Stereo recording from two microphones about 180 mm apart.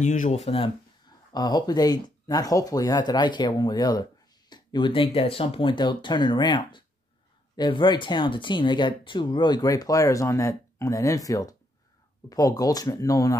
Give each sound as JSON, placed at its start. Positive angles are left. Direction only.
{"t": 0.0, "sound": "speech", "side_deg": 40}
{"t": 1.3, "sound": "speech", "side_deg": 20}